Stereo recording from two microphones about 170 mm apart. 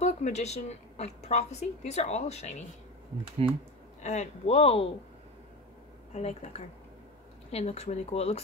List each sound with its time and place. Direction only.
0.0 s a woman's voice: 40° left (ahead or behind)
3.4 s speech: 35° right (ahead or behind)
4.0 s a woman's voice: 40° left (ahead or behind)
6.1 s a woman's voice: 40° left (ahead or behind)